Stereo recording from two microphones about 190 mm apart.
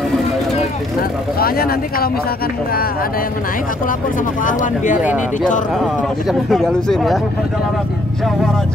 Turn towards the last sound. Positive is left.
turn(degrees=0)  # may be behind; listen again after turning